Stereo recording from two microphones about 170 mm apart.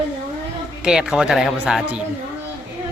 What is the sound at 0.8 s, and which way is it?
Speech, 5° right (ahead or behind).